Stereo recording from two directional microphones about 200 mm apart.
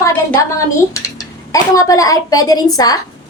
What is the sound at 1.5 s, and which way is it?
A woman's voice, 15° left (ahead or behind).